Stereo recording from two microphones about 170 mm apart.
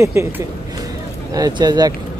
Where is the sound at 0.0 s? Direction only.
15° right (ahead or behind).